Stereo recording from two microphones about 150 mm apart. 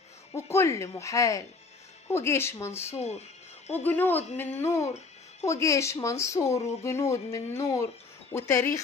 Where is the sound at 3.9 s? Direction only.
15° left (ahead or behind).